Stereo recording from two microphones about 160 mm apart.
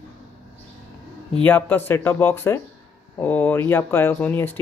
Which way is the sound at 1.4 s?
10° left (ahead or behind).